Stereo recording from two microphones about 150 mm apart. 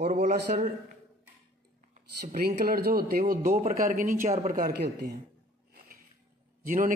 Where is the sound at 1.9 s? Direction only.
60° right (ahead or behind); by 3.5 s 80° right.